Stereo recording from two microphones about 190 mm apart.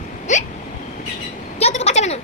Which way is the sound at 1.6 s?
35° left (ahead or behind).